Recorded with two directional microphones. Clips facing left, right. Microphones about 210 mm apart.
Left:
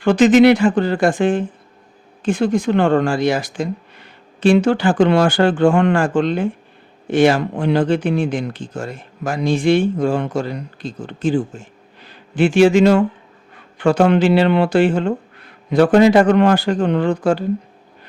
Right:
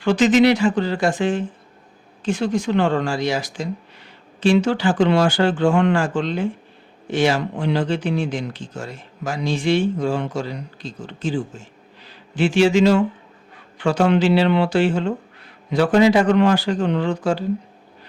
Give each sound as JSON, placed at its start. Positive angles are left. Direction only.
{"t": 0.0, "sound": "a man's voice", "side_deg": 55}